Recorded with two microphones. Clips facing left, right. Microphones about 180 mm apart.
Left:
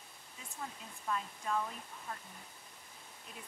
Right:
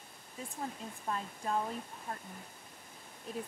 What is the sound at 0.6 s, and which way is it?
Speech, 35° right (ahead or behind).